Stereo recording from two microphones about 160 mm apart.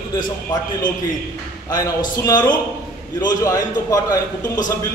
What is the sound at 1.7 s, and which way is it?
A man's voice, 20° left (ahead or behind).